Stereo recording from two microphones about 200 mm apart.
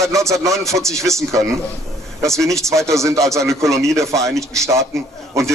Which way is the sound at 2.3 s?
Centre (ahead or behind).